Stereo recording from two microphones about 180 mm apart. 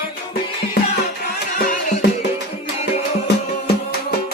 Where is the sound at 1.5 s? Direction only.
50° left (ahead or behind).